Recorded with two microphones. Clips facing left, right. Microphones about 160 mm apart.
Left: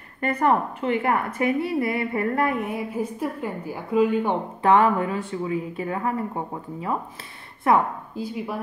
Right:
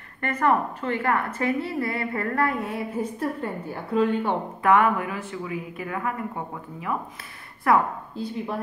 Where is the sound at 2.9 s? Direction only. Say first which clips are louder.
Even; 10° left (ahead or behind).